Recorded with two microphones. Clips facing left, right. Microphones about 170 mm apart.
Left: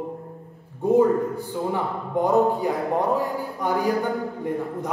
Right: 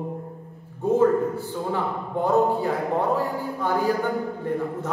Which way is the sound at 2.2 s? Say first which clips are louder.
Left 1 dB; 15° left (ahead or behind).